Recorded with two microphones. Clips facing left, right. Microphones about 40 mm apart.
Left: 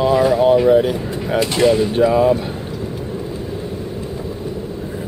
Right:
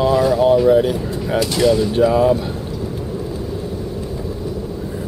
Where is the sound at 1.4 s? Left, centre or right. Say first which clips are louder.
Left 1 dB; left.